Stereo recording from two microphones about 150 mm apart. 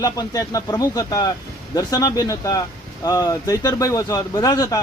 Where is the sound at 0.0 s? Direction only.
25° left (ahead or behind).